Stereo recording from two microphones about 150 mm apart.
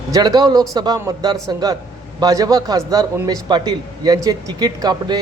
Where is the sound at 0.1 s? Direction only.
30° right (ahead or behind).